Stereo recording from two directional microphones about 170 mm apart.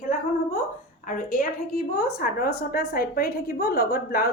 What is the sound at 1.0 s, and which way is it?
A woman's voice, 55° left (ahead or behind).